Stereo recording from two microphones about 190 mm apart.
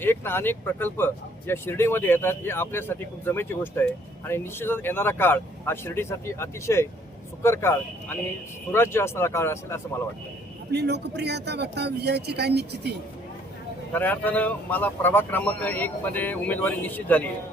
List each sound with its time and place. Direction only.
0.0 s speech: 10° left (ahead or behind)
10.7 s speech: 60° right (ahead or behind)
13.9 s speech: 10° left (ahead or behind)